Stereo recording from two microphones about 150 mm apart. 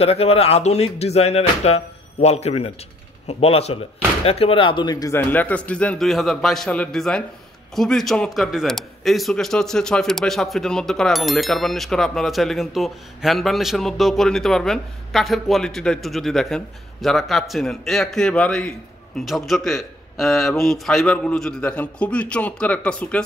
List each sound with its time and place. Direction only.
0.0 s a man's voice: 40° left (ahead or behind); by 23.2 s 10° left (ahead or behind)